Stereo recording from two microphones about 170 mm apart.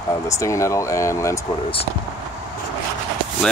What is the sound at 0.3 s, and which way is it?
Speech, 20° left (ahead or behind).